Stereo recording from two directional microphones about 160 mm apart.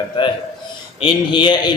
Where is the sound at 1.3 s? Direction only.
30° left (ahead or behind).